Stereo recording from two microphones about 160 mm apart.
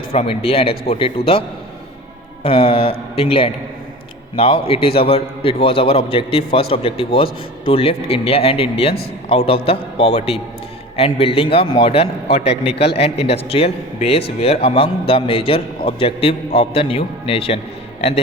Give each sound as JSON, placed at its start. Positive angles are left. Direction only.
{"t": 0.1, "sound": "a man's voice", "side_deg": 35}